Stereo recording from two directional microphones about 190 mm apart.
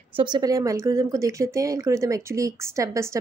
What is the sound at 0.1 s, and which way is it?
Speech, 25° right (ahead or behind).